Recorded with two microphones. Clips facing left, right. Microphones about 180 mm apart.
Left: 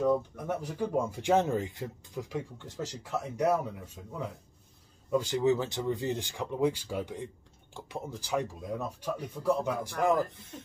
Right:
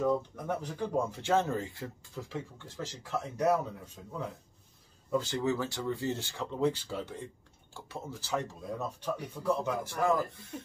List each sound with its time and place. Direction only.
0.4 s speech: 10° left (ahead or behind)
5.1 s speech: 15° left (ahead or behind)